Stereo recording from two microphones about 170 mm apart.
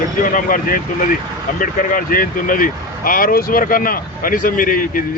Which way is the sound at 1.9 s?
55° left (ahead or behind).